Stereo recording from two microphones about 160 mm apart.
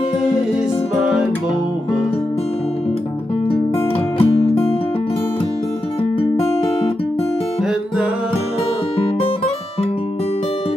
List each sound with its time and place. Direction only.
4.2 s music: 35° left (ahead or behind)
6.3 s guitar: 35° left (ahead or behind)